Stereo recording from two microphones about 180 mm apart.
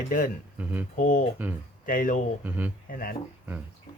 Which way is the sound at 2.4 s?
10° right (ahead or behind).